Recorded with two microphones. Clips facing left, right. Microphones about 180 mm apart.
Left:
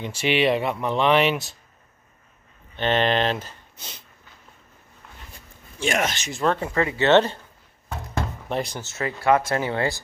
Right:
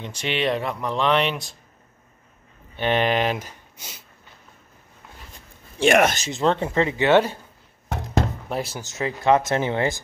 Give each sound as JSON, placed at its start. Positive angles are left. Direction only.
{"t": 0.0, "sound": "speech", "side_deg": 5}
{"t": 2.7, "sound": "speech", "side_deg": -10}
{"t": 5.8, "sound": "speech", "side_deg": -65}
{"t": 6.3, "sound": "speech", "side_deg": -20}
{"t": 7.1, "sound": "speech", "side_deg": -10}
{"t": 8.5, "sound": "speech", "side_deg": -5}
{"t": 8.8, "sound": "speech", "side_deg": -15}